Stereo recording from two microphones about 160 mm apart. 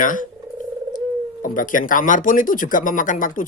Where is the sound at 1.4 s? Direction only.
60° left (ahead or behind).